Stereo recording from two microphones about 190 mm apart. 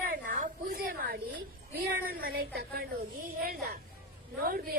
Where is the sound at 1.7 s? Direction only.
60° right (ahead or behind).